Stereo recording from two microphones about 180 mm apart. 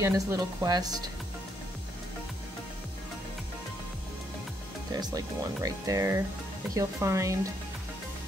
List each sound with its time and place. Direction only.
0.0 s speech: 20° right (ahead or behind)
4.9 s speech: 20° right (ahead or behind)